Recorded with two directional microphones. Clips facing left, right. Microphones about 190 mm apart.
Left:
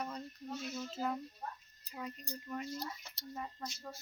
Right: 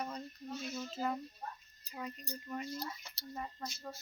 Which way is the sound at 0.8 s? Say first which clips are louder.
Right 1 dB; centre (ahead or behind).